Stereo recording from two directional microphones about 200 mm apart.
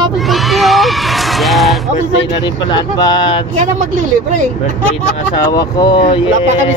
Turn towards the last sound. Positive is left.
turn(degrees=25)  # may be behind; listen again after turning